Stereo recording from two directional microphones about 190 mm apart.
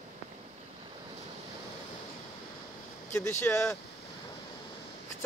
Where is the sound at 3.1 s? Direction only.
15° left (ahead or behind).